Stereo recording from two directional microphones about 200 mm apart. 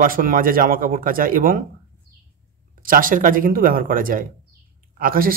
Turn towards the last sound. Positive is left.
turn(degrees=-45)  # may be behind; listen again after turning